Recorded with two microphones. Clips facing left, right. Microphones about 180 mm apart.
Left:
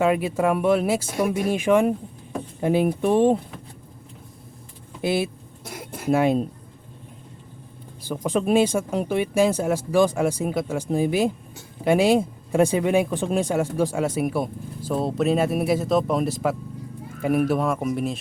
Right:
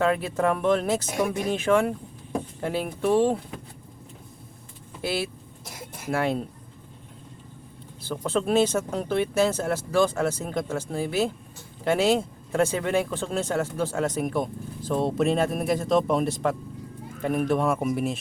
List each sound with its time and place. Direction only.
0.0 s speech: 10° left (ahead or behind)
5.0 s speech: 20° left (ahead or behind)
8.0 s speech: 15° left (ahead or behind)